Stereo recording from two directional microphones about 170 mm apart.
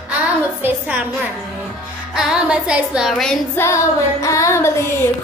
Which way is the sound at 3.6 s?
15° left (ahead or behind).